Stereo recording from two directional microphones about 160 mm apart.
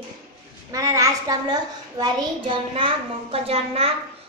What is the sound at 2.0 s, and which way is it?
A child's voice, 30° right (ahead or behind).